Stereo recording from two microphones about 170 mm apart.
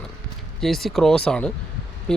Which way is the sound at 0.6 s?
Centre (ahead or behind).